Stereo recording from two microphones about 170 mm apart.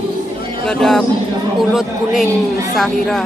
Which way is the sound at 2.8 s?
Centre (ahead or behind).